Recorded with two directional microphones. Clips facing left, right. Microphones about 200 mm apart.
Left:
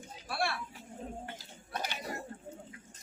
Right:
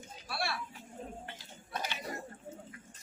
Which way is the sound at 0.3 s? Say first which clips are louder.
Left 3 dB; 50° left (ahead or behind).